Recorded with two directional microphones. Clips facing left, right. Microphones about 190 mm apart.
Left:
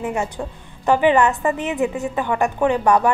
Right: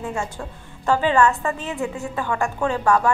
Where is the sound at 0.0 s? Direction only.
20° left (ahead or behind).